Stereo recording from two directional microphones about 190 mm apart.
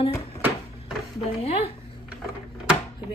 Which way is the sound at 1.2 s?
30° left (ahead or behind).